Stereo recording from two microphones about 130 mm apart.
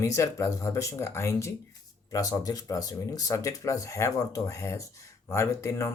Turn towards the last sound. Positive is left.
turn(degrees=20)  # may be behind; listen again after turning